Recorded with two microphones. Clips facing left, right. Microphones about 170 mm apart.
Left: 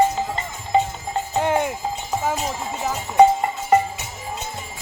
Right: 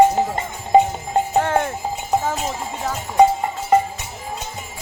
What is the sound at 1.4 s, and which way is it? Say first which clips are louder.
Music: even; 15° left (ahead or behind).